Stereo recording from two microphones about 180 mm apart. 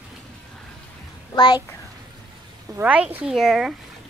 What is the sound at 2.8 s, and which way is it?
Speech, 10° right (ahead or behind).